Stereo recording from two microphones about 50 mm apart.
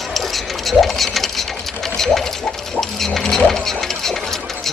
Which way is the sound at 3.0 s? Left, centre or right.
Centre.